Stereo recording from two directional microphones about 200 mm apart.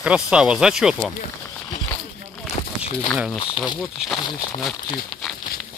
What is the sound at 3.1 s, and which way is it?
Speech, 5° right (ahead or behind).